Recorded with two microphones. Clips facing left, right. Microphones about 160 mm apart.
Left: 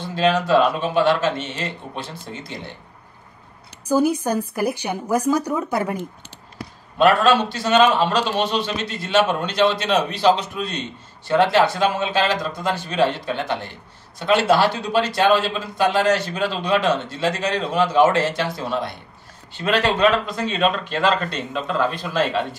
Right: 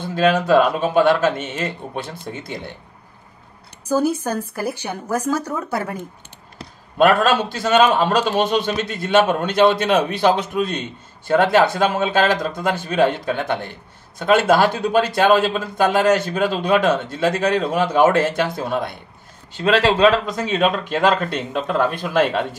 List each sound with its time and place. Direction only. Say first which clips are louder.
0.0 s a man's voice: right 2 dB; 50° right (ahead or behind)
3.8 s a woman's voice: left 1 dB; 15° left (ahead or behind)
7.0 s a man's voice: even; 50° right (ahead or behind)
19.5 s speech: right 4 dB; 35° right (ahead or behind)
20.2 s a man's voice: right 2 dB; 50° right (ahead or behind)